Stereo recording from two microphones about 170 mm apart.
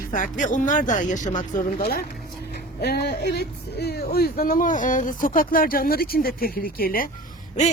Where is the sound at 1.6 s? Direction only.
60° left (ahead or behind).